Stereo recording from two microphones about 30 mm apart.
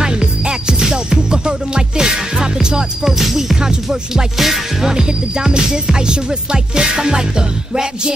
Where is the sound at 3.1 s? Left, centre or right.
Centre.